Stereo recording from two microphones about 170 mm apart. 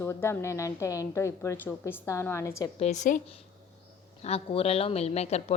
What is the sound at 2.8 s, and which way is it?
Speech, 45° left (ahead or behind).